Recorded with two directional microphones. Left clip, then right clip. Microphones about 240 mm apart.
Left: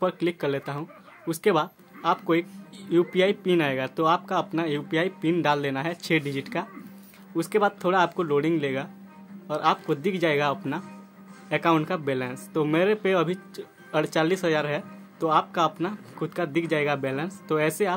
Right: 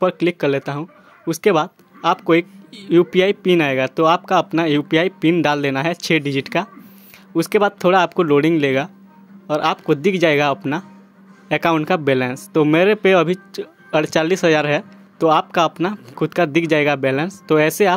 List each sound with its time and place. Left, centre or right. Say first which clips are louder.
0.0 s speech: right 8 dB; right